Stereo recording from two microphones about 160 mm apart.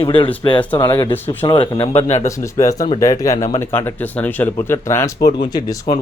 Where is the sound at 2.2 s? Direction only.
20° left (ahead or behind).